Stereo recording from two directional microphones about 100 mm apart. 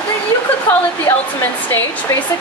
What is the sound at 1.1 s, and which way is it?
Speech, 35° left (ahead or behind).